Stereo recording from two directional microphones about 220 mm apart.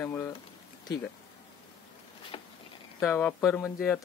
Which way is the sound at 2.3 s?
25° left (ahead or behind).